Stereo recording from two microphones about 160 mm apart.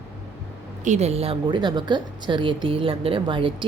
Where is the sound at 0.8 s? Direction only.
45° right (ahead or behind).